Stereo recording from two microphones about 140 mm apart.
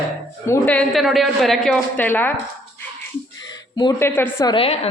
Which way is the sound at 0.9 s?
Centre (ahead or behind).